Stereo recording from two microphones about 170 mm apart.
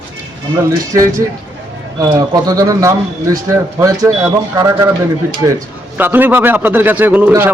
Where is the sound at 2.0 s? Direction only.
20° right (ahead or behind).